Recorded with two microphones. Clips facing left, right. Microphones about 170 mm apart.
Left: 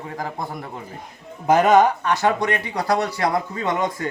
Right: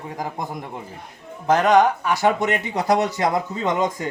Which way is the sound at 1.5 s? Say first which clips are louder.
Left 1 dB; 5° left (ahead or behind).